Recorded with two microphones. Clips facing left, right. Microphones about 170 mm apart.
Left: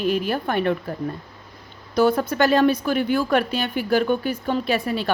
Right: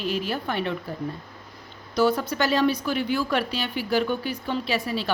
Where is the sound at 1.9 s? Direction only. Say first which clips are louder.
Left 4 dB; 55° left (ahead or behind).